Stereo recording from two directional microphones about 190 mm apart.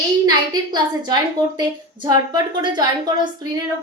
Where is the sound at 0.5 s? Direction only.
20° right (ahead or behind).